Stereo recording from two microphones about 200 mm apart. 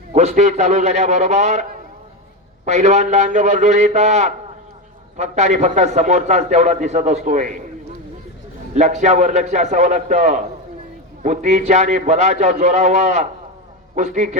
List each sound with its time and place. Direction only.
0.1 s a man's voice: 35° right (ahead or behind)
2.6 s a man's voice: 35° right (ahead or behind)
8.7 s a man's voice: 35° right (ahead or behind)